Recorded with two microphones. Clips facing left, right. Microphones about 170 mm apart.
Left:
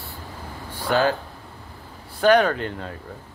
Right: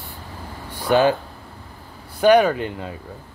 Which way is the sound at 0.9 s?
15° right (ahead or behind).